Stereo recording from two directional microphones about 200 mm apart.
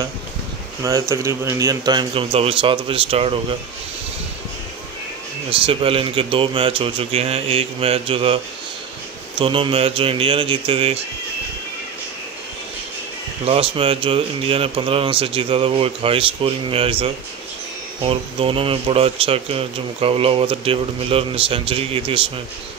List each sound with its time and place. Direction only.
0.8 s speech: 15° right (ahead or behind)
5.5 s speech: 25° right (ahead or behind)
9.4 s speech: 25° right (ahead or behind)
13.5 s speech: 30° right (ahead or behind)
18.0 s speech: 30° right (ahead or behind)